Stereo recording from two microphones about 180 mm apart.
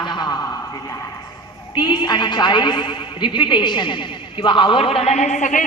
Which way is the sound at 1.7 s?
25° left (ahead or behind).